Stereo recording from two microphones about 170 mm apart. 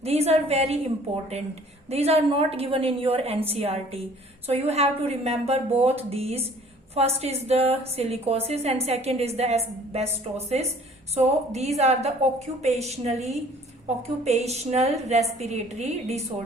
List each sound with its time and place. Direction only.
0.0 s a woman's voice: 35° right (ahead or behind)
1.9 s a woman's voice: 35° right (ahead or behind)